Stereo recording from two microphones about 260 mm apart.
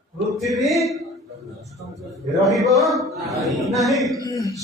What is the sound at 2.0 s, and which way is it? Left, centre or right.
A man's voice, centre.